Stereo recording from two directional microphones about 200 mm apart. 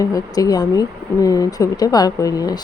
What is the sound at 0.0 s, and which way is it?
Speech, 15° left (ahead or behind).